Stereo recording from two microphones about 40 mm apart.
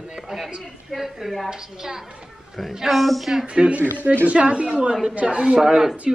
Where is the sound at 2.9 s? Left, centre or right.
Centre.